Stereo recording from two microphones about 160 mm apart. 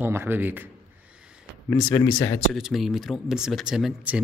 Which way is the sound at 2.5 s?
Centre (ahead or behind).